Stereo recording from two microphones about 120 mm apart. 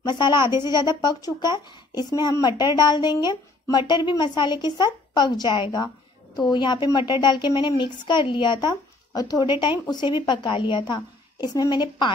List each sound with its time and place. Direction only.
0.0 s speech: 40° left (ahead or behind)